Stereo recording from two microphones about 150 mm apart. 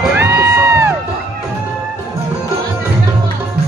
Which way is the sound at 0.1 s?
15° right (ahead or behind).